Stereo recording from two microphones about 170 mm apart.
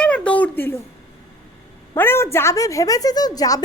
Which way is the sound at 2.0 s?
15° left (ahead or behind).